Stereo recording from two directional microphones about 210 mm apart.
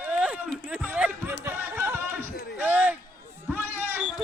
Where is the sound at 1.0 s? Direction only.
10° right (ahead or behind).